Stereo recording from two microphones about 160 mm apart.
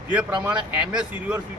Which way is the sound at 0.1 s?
10° right (ahead or behind).